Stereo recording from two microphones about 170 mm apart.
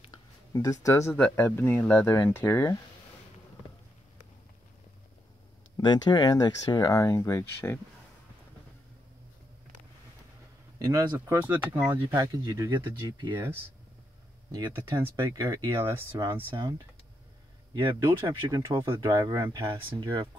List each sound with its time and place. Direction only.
0.5 s speech: 20° left (ahead or behind)
5.8 s speech: 25° left (ahead or behind)
10.8 s speech: 20° right (ahead or behind)
14.7 s speech: 15° right (ahead or behind)
18.2 s speech: 20° right (ahead or behind)